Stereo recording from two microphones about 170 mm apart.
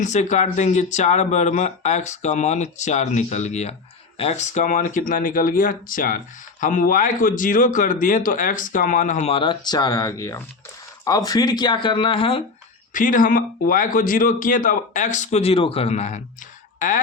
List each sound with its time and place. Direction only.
0.0 s speech: 45° left (ahead or behind)
12.9 s speech: 50° left (ahead or behind)